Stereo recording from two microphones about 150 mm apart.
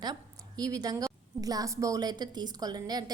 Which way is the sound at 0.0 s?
25° right (ahead or behind).